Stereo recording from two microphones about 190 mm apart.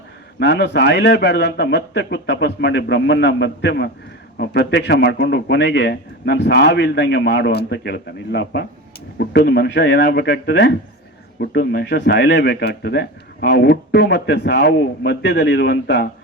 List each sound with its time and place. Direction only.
0.3 s speech: 65° left (ahead or behind)